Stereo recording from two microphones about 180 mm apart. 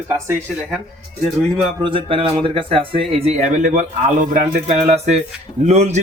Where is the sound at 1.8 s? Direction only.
30° right (ahead or behind).